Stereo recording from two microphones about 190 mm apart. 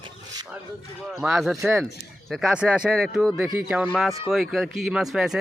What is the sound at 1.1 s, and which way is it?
Speech, centre (ahead or behind).